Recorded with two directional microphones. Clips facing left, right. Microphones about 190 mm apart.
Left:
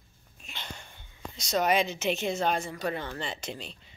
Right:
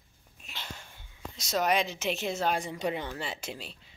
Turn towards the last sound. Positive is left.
turn(degrees=-5)  # may be behind; listen again after turning